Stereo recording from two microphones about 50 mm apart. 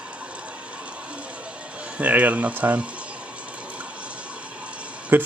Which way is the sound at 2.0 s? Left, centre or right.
Right.